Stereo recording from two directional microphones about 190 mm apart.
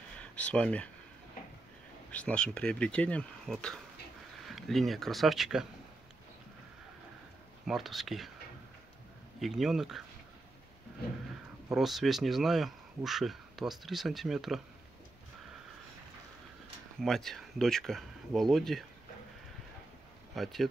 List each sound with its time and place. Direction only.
0.2 s speech: 5° left (ahead or behind)
2.1 s speech: 5° left (ahead or behind)
7.6 s speech: centre (ahead or behind)
9.4 s speech: centre (ahead or behind)
11.7 s speech: centre (ahead or behind)
17.0 s speech: centre (ahead or behind)
20.4 s speech: centre (ahead or behind)